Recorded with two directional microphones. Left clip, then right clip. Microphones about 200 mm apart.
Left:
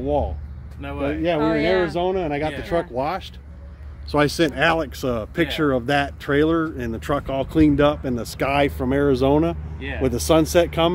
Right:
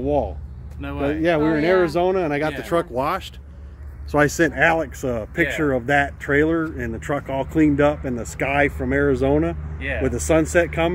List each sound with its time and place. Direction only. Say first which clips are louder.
0.0 s speech: right 1 dB; 15° right (ahead or behind)
0.7 s speech: right 1 dB; 50° right (ahead or behind)
1.4 s speech: even; 50° left (ahead or behind)
1.9 s speech: right 3 dB; 15° right (ahead or behind)
4.1 s speech: right 1 dB; 15° left (ahead or behind)
9.8 s speech: right 3 dB; 35° right (ahead or behind)
10.0 s speech: left 2 dB; 10° left (ahead or behind)